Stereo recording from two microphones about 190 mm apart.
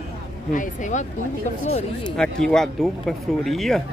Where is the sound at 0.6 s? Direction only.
40° left (ahead or behind).